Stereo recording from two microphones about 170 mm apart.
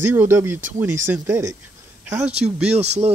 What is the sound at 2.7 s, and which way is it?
Speech, 40° right (ahead or behind).